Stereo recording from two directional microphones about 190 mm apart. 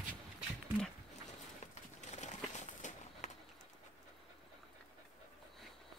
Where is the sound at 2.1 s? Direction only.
40° left (ahead or behind).